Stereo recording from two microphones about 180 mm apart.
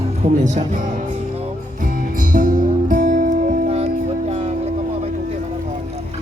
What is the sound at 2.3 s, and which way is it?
Music, 50° right (ahead or behind).